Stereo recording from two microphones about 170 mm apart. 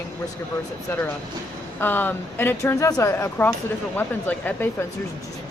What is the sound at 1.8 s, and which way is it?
Speech, 10° left (ahead or behind).